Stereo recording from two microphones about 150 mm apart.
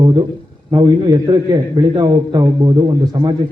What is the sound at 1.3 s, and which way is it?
A man's voice, 30° right (ahead or behind).